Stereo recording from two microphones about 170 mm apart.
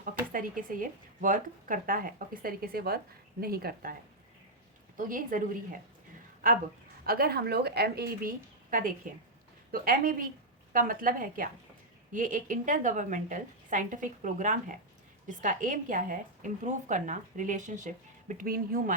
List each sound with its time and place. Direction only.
0.0 s speech: 55° right (ahead or behind)
4.9 s a woman's voice: 55° right (ahead or behind); by 8.3 s 70° right (ahead or behind)
8.7 s a woman's voice: 50° right (ahead or behind)